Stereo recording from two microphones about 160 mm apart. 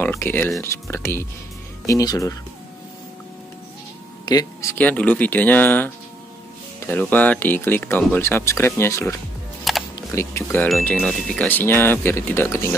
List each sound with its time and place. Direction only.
0.0 s speech: 15° left (ahead or behind)
4.3 s speech: 20° left (ahead or behind)
6.9 s speech: 10° left (ahead or behind)
9.7 s music: centre (ahead or behind)
10.1 s speech: 15° left (ahead or behind)